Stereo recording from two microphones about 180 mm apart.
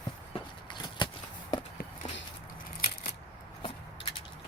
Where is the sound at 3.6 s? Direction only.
30° left (ahead or behind).